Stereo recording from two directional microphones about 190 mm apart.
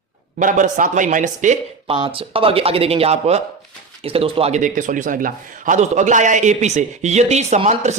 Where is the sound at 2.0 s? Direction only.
30° right (ahead or behind).